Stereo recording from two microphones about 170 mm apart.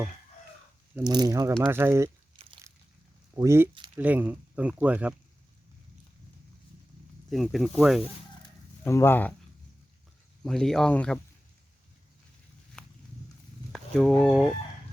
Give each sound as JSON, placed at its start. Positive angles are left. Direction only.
{"t": 1.0, "sound": "speech", "side_deg": -25}
{"t": 2.3, "sound": "a sound", "side_deg": -30}
{"t": 3.3, "sound": "speech", "side_deg": -15}
{"t": 7.3, "sound": "speech", "side_deg": 0}
{"t": 8.8, "sound": "speech", "side_deg": 15}
{"t": 10.4, "sound": "speech", "side_deg": 5}
{"t": 12.8, "sound": "walk", "side_deg": 5}
{"t": 13.7, "sound": "fowl", "side_deg": 5}